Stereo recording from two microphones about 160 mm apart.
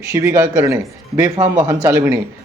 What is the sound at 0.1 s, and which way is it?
A man's voice, 15° right (ahead or behind).